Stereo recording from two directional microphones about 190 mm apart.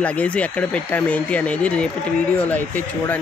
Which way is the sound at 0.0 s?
5° left (ahead or behind).